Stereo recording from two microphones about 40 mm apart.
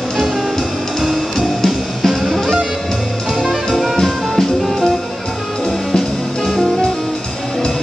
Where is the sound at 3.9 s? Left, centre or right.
Centre.